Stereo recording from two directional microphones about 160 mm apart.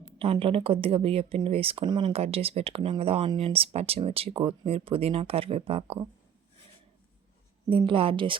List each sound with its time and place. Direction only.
0.2 s speech: 35° right (ahead or behind)
7.7 s speech: 30° right (ahead or behind)